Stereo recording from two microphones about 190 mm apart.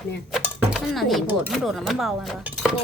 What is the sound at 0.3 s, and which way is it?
Speech, centre (ahead or behind).